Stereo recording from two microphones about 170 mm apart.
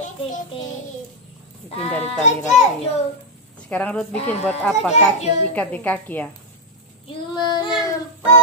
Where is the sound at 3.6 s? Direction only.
5° left (ahead or behind).